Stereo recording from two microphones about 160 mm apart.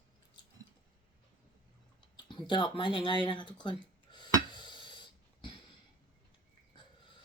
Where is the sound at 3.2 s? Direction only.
30° left (ahead or behind).